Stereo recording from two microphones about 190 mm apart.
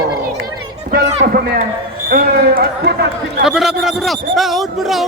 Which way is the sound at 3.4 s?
Centre (ahead or behind).